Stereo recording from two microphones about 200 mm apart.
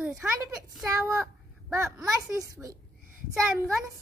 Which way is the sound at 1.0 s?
15° right (ahead or behind).